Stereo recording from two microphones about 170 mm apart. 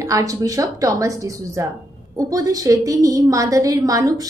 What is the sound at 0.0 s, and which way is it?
A woman's voice, 20° right (ahead or behind).